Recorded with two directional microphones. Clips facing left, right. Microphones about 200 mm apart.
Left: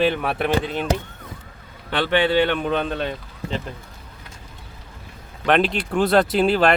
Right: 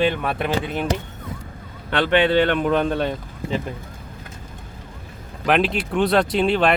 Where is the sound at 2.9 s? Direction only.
10° right (ahead or behind).